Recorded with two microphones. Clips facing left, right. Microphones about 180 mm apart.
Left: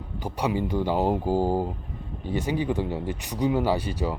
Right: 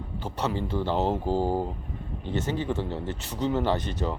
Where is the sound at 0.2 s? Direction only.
15° left (ahead or behind).